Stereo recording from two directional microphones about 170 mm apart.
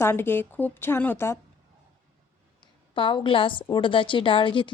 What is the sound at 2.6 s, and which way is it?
A woman's voice, 30° left (ahead or behind).